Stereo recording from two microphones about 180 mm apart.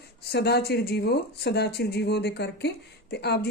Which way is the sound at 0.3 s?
65° left (ahead or behind).